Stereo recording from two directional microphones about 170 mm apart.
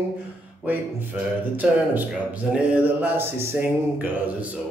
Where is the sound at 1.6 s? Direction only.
5° right (ahead or behind).